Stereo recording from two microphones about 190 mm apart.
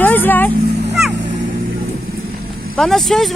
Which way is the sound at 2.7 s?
Centre (ahead or behind).